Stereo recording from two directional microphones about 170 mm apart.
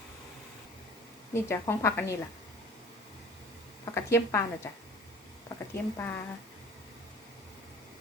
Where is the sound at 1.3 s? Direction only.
15° left (ahead or behind).